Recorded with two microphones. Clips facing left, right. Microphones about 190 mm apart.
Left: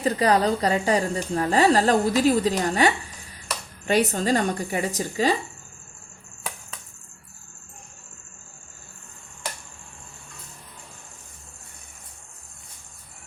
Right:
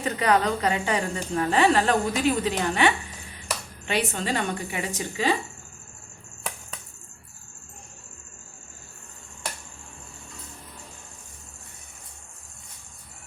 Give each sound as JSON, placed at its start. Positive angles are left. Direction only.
{"t": 0.0, "sound": "a woman's voice", "side_deg": 35}